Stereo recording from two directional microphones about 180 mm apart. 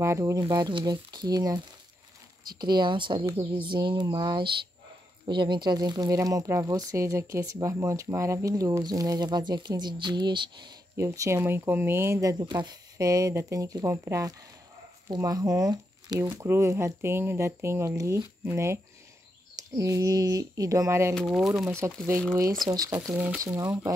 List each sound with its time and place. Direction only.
0.0 s speech: 15° right (ahead or behind)
19.8 s speech: 20° right (ahead or behind)
21.1 s speech: centre (ahead or behind)
22.3 s speech: 20° right (ahead or behind)
23.0 s speech: 5° right (ahead or behind)
23.4 s speech: 15° right (ahead or behind)